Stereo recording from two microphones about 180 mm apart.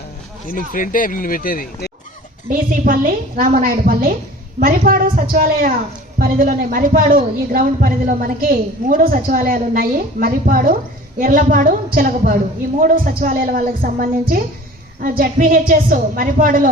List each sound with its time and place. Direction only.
0.7 s speech: 50° left (ahead or behind)
2.5 s speech: 50° right (ahead or behind)